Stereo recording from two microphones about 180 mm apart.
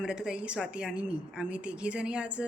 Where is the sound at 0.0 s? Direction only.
5° right (ahead or behind).